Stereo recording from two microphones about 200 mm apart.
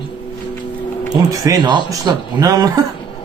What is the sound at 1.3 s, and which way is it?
Speech, 15° right (ahead or behind).